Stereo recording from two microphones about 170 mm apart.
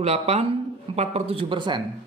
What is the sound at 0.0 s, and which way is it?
Speech, 40° right (ahead or behind).